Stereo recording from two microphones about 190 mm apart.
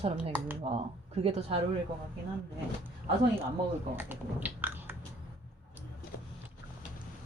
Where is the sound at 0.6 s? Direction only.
35° right (ahead or behind).